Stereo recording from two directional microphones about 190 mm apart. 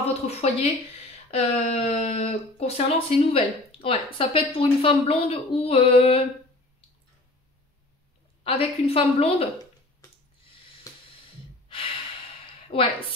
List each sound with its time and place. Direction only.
0.3 s speech: 35° left (ahead or behind)
8.5 s speech: 30° left (ahead or behind)
10.9 s music: 20° left (ahead or behind)
12.6 s a woman's voice: 30° left (ahead or behind)